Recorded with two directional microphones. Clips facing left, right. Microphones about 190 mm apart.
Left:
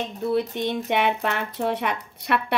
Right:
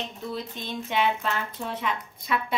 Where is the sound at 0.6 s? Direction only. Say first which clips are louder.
Left 4 dB; 65° left (ahead or behind).